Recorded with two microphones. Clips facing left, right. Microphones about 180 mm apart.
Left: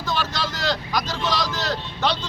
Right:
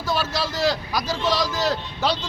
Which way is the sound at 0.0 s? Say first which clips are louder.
Right 2 dB; 10° right (ahead or behind).